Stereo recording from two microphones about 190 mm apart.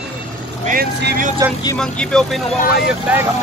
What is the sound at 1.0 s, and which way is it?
Speech, 55° right (ahead or behind).